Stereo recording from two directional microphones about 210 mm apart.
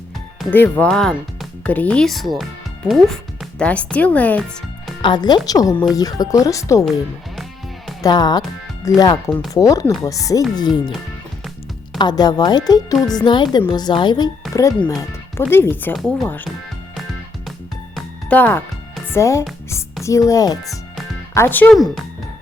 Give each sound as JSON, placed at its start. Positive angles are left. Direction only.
{"t": 0.3, "sound": "speech", "side_deg": 10}
{"t": 5.0, "sound": "speech", "side_deg": 20}
{"t": 8.0, "sound": "speech", "side_deg": 20}
{"t": 11.9, "sound": "speech", "side_deg": 20}
{"t": 17.9, "sound": "music", "side_deg": 5}
{"t": 19.0, "sound": "speech", "side_deg": 15}